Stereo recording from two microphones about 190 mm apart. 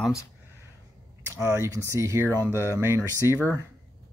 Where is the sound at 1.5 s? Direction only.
15° right (ahead or behind).